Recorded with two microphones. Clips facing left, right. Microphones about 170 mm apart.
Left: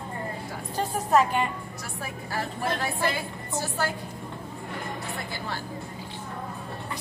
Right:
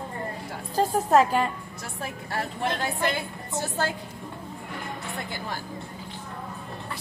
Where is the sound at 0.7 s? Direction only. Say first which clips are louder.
Right 3 dB; 35° right (ahead or behind).